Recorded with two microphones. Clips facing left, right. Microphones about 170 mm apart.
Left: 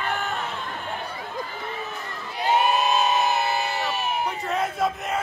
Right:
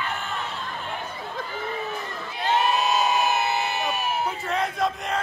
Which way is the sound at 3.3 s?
20° right (ahead or behind).